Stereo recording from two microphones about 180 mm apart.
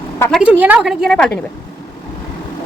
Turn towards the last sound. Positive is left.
turn(degrees=5)  # may be behind; listen again after turning